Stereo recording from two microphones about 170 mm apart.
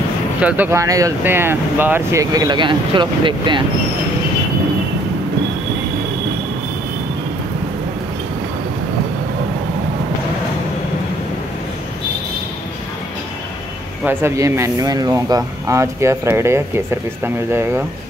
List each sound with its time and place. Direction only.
0.4 s speech: 10° right (ahead or behind); by 3.6 s 30° right (ahead or behind)
14.0 s speech: 15° right (ahead or behind)